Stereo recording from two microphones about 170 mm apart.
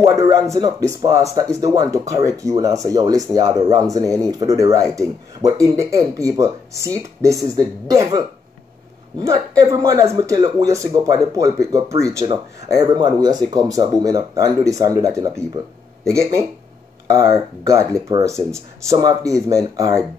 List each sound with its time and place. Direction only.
0.0 s speech: 20° right (ahead or behind)
9.6 s speech: 20° right (ahead or behind)